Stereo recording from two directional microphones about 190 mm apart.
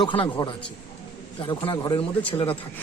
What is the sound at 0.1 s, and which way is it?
Speech, 25° left (ahead or behind).